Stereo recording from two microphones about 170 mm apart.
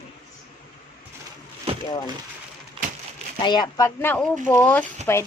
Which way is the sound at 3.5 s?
25° left (ahead or behind).